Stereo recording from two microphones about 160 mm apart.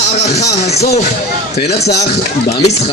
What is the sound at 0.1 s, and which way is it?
Speech, 40° left (ahead or behind).